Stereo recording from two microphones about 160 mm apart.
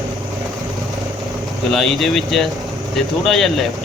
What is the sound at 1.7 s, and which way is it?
Speech, centre (ahead or behind).